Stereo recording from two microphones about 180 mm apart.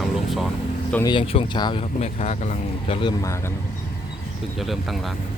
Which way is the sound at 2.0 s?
40° left (ahead or behind).